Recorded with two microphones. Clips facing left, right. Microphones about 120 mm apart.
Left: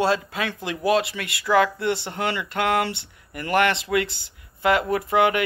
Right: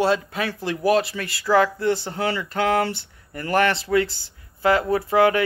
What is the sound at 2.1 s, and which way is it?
Speech, 35° right (ahead or behind).